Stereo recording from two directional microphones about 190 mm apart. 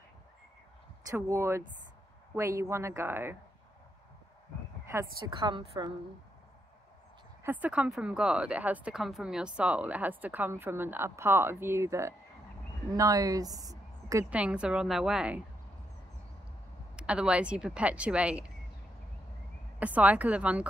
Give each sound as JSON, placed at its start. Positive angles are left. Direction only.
{"t": 1.1, "sound": "speech", "side_deg": -15}
{"t": 5.4, "sound": "a woman's voice", "side_deg": -30}
{"t": 7.4, "sound": "speech", "side_deg": -10}
{"t": 14.3, "sound": "speech", "side_deg": -5}
{"t": 16.9, "sound": "speech", "side_deg": -5}
{"t": 19.8, "sound": "speech", "side_deg": -5}